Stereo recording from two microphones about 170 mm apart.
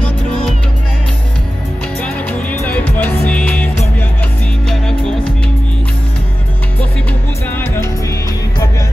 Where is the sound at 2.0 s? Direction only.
10° left (ahead or behind).